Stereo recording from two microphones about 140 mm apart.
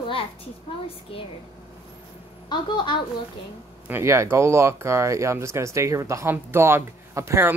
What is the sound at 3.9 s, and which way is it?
Speech, 15° right (ahead or behind).